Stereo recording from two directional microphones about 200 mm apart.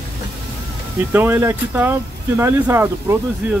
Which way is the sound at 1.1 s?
10° right (ahead or behind).